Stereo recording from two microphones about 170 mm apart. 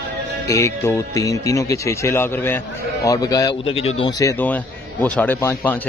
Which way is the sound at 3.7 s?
35° left (ahead or behind).